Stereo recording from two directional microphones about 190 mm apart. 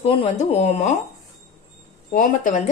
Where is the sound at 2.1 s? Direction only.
45° left (ahead or behind).